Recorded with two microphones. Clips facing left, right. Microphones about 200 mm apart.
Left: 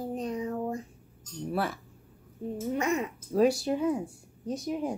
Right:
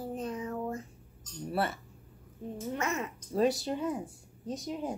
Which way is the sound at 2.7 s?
15° left (ahead or behind).